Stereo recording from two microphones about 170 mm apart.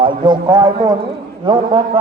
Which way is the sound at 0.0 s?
30° right (ahead or behind).